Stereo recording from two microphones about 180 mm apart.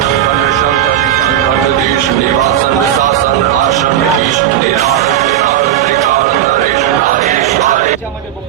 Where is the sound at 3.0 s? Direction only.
45° right (ahead or behind).